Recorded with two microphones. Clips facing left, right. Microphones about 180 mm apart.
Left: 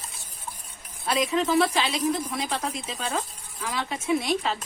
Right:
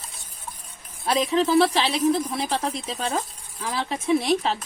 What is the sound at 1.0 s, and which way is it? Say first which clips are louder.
A woman's voice: right 3 dB; 35° right (ahead or behind).